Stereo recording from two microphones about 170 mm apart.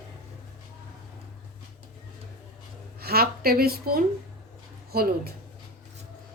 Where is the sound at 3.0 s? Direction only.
65° right (ahead or behind).